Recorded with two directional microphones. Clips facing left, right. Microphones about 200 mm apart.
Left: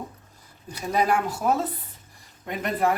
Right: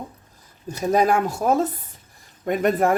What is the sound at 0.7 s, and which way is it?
Speech, 45° right (ahead or behind).